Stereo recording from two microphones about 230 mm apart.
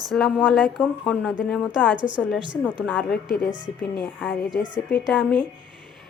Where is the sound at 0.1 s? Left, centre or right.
Centre.